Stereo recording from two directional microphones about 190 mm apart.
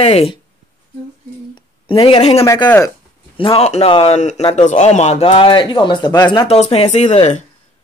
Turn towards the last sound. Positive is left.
turn(degrees=35)  # may be behind; listen again after turning